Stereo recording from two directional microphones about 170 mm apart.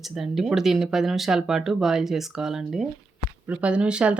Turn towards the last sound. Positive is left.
turn(degrees=-5)  # may be behind; listen again after turning